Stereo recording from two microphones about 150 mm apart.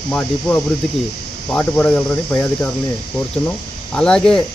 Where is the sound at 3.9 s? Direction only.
5° left (ahead or behind).